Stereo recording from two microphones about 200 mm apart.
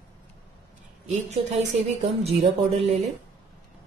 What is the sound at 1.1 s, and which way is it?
A woman's voice, 35° right (ahead or behind).